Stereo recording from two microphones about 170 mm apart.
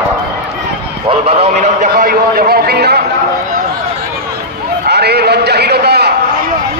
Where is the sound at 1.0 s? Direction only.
40° right (ahead or behind); by 3.0 s 70° right (ahead or behind).